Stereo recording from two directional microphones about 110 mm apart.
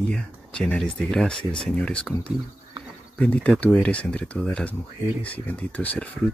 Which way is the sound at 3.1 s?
10° left (ahead or behind).